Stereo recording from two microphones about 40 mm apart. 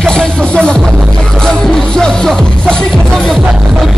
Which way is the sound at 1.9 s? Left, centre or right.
Centre.